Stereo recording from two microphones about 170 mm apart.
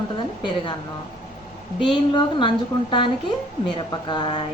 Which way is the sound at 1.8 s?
30° left (ahead or behind).